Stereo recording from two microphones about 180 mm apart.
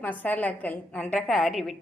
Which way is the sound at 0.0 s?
10° left (ahead or behind).